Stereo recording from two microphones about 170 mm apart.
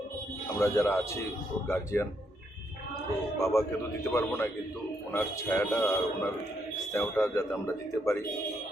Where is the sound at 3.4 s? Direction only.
20° left (ahead or behind).